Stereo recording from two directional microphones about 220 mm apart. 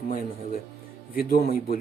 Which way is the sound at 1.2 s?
40° left (ahead or behind).